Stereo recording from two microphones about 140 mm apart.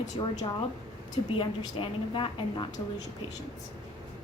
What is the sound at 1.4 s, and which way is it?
A woman's voice, 35° left (ahead or behind).